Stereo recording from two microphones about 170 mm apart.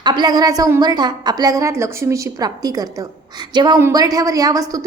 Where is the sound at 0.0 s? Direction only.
25° right (ahead or behind).